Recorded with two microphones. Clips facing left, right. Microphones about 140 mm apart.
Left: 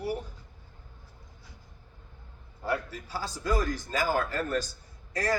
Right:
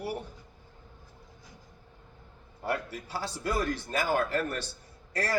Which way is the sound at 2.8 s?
65° right (ahead or behind).